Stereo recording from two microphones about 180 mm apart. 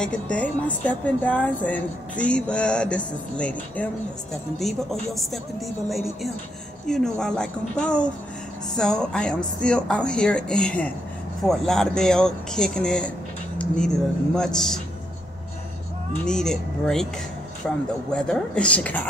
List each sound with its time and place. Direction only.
0.0 s a woman's voice: 5° left (ahead or behind)
6.9 s speech: 5° left (ahead or behind)
16.3 s a woman's voice: 5° left (ahead or behind)